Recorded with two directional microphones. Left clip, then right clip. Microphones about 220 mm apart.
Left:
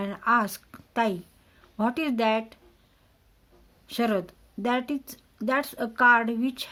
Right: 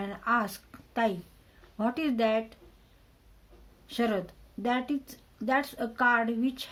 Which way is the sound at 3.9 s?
50° left (ahead or behind).